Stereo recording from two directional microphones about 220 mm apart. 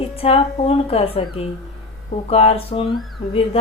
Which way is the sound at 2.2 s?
25° left (ahead or behind).